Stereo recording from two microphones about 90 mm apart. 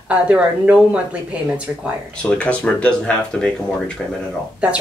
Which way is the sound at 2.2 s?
15° left (ahead or behind).